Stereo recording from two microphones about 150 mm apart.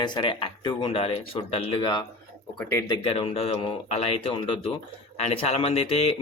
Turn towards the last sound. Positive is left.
turn(degrees=45)  # may be behind; listen again after turning